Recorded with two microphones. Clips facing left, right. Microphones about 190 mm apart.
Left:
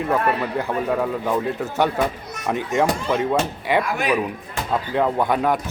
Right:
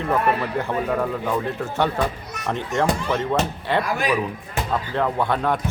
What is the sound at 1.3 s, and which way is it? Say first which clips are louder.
Speech: left 2 dB; 15° left (ahead or behind).